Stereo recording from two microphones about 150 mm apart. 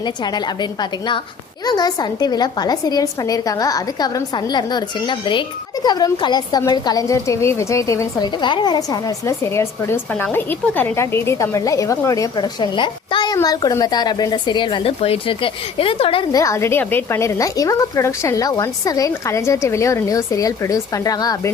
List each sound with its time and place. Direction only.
0.0 s a woman's voice: 30° left (ahead or behind)
16.3 s a woman's voice: 20° left (ahead or behind)